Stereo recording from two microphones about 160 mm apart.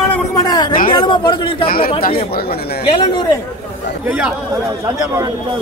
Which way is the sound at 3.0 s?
25° left (ahead or behind).